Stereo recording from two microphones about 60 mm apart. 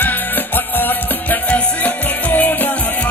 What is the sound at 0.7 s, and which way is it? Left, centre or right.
Music, left.